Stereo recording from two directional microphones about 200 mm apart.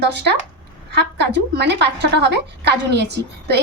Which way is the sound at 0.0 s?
60° right (ahead or behind).